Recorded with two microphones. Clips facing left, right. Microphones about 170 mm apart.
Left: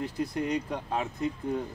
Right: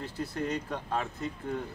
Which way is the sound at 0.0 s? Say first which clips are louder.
Left 3 dB; 15° left (ahead or behind).